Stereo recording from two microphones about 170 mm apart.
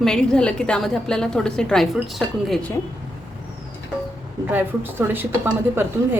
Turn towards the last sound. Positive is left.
turn(degrees=-10)  # may be behind; listen again after turning